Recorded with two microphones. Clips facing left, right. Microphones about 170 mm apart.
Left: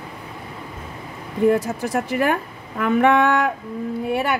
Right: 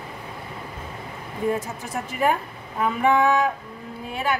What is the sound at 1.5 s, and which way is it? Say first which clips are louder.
A woman's voice: left 7 dB; 80° left.